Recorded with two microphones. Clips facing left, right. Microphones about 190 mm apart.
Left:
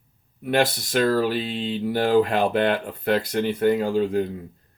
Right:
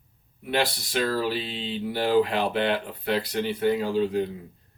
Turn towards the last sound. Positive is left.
turn(degrees=50)  # may be behind; listen again after turning